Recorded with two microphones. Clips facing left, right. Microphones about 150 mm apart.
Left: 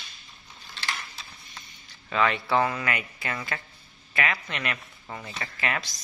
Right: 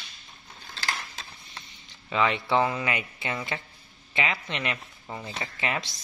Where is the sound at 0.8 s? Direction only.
40° right (ahead or behind).